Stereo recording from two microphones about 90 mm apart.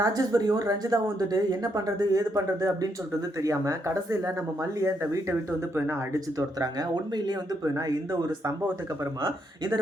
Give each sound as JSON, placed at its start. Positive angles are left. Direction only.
{"t": 0.0, "sound": "speech", "side_deg": -45}
{"t": 6.1, "sound": "speech", "side_deg": -45}